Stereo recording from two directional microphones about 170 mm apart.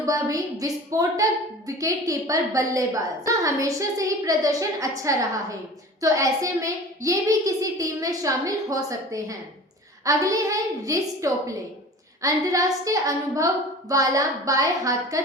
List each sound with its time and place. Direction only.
0.0 s a woman's voice: 20° right (ahead or behind)